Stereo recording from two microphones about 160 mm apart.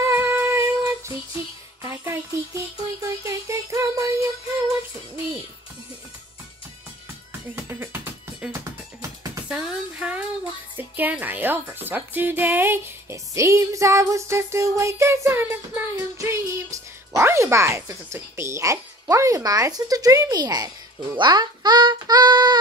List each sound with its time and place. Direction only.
0.1 s female singing: 15° right (ahead or behind)
1.8 s music: 15° right (ahead or behind)
7.5 s music: 15° right (ahead or behind)
10.8 s speech: 10° right (ahead or behind); by 22.6 s 25° right (ahead or behind)